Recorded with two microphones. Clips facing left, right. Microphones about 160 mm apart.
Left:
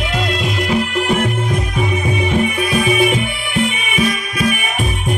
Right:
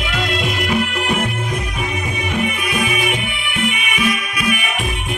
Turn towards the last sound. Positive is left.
turn(degrees=35)  # may be behind; listen again after turning